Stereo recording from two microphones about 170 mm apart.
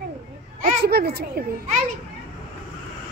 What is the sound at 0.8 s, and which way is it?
Speech, 70° right (ahead or behind).